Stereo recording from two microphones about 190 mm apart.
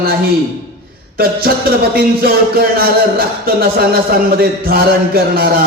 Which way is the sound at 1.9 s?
55° right (ahead or behind).